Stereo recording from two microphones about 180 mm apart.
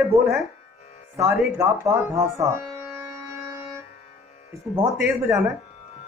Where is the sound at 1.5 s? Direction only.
15° right (ahead or behind).